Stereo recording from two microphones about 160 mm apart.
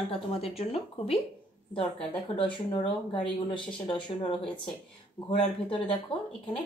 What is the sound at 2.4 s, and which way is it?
Speech, 30° left (ahead or behind).